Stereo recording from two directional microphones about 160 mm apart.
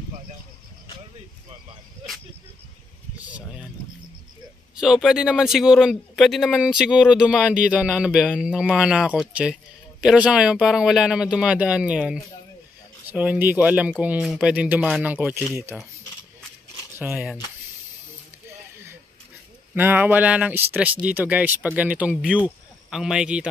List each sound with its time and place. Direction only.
3.2 s a sound: 10° right (ahead or behind)
4.7 s speech: 5° right (ahead or behind)
17.0 s speech: 5° right (ahead or behind)
19.7 s speech: 10° right (ahead or behind)